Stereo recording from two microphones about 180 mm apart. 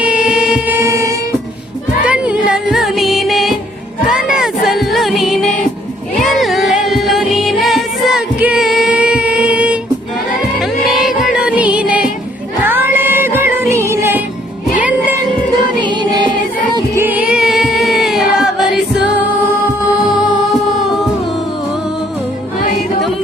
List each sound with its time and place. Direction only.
0.0 s music: 5° right (ahead or behind)
2.0 s music: 5° right (ahead or behind)
15.8 s music: 25° right (ahead or behind)
17.0 s female singing: 10° right (ahead or behind)